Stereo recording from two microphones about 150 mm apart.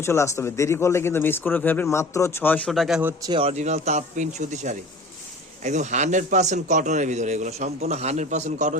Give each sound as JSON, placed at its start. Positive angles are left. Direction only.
{"t": 0.0, "sound": "a man's voice", "side_deg": 20}
{"t": 2.6, "sound": "speech", "side_deg": 0}
{"t": 3.0, "sound": "speech", "side_deg": -15}
{"t": 3.2, "sound": "a man's voice", "side_deg": -40}